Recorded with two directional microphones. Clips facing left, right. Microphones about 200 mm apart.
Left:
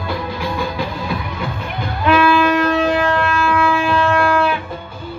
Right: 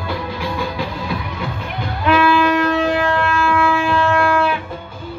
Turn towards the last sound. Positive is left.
turn(degrees=35)  # may be behind; listen again after turning